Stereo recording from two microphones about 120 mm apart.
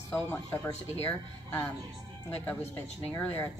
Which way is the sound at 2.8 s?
15° left (ahead or behind).